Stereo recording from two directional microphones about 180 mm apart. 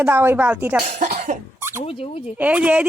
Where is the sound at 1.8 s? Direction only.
30° left (ahead or behind).